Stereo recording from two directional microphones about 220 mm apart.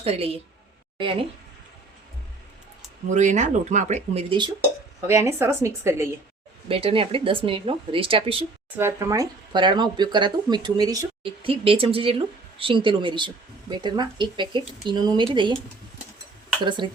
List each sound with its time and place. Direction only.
0.0 s speech: 25° right (ahead or behind)
3.1 s a woman's voice: 35° right (ahead or behind); by 6.1 s 10° right (ahead or behind)
6.7 s speech: 25° right (ahead or behind)
8.8 s speech: 15° right (ahead or behind)
16.6 s speech: 20° right (ahead or behind)